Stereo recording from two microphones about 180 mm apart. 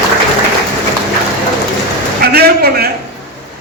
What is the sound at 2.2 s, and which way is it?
Speech, 60° right (ahead or behind).